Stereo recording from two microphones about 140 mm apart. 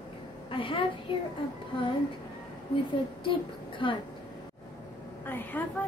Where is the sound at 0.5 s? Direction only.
40° left (ahead or behind).